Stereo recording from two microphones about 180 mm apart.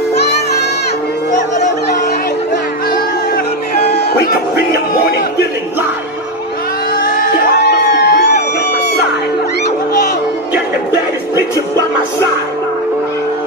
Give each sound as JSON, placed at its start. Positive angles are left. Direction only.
{"t": 3.8, "sound": "music", "side_deg": 60}
{"t": 7.5, "sound": "music", "side_deg": 70}